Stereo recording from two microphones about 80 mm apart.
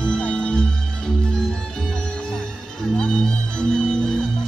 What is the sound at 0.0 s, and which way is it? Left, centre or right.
Music, centre.